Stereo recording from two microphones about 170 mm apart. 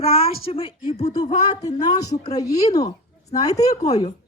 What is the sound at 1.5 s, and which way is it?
A woman's voice, 20° left (ahead or behind).